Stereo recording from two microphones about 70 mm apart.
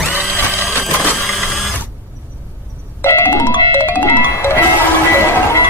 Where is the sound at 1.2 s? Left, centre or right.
Centre.